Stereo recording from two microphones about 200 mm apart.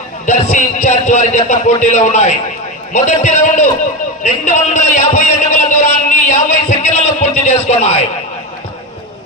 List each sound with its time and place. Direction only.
0.3 s a man's voice: 35° left (ahead or behind)